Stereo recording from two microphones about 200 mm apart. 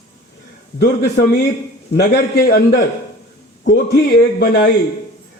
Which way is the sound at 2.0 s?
55° left (ahead or behind).